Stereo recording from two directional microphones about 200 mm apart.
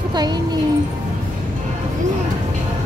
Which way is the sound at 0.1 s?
20° right (ahead or behind).